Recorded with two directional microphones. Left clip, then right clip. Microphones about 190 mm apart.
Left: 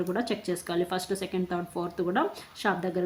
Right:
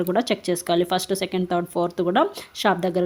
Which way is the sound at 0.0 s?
40° right (ahead or behind).